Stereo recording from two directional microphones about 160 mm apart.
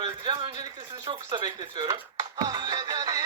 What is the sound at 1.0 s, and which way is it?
Music, 30° right (ahead or behind).